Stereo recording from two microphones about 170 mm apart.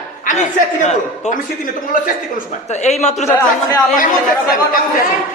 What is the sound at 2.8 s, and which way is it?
Speech, 40° left (ahead or behind).